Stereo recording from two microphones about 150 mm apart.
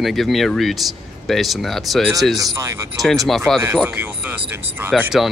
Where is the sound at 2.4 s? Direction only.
20° right (ahead or behind).